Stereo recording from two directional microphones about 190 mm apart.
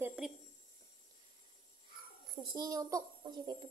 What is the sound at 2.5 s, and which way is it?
A child's voice, 20° right (ahead or behind).